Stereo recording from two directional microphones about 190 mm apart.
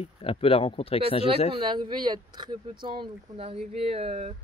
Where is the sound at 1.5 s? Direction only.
25° right (ahead or behind).